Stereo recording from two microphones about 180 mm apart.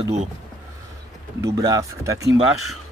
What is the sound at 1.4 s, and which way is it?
Speech, 20° right (ahead or behind).